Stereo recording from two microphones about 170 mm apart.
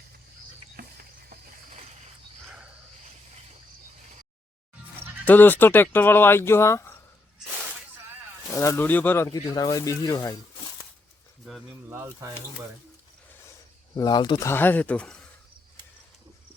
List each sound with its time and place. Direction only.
0.8 s a sound: 65° right (ahead or behind)
5.2 s speech: 10° left (ahead or behind)
8.5 s speech: 15° left (ahead or behind)
11.4 s speech: centre (ahead or behind)
11.9 s speech: 10° right (ahead or behind)
13.9 s speech: 25° left (ahead or behind); by 15.2 s 5° left (ahead or behind)